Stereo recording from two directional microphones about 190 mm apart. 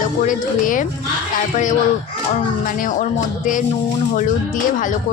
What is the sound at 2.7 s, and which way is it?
Speech, 45° left (ahead or behind).